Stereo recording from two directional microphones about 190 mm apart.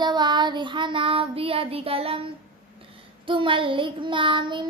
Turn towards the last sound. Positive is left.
turn(degrees=-25)  # may be behind; listen again after turning